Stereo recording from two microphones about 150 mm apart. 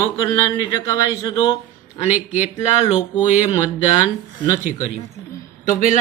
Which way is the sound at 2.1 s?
10° right (ahead or behind).